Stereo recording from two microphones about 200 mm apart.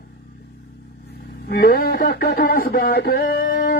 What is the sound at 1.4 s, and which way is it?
Speech, 55° left (ahead or behind).